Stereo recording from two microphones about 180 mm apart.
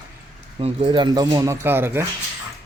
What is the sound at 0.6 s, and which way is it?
Speech, 30° right (ahead or behind).